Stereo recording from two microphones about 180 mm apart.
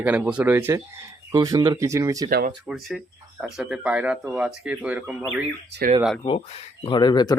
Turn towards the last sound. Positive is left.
turn(degrees=25)  # may be behind; listen again after turning